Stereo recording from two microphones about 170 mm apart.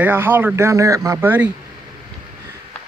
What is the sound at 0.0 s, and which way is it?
Speech, 10° right (ahead or behind).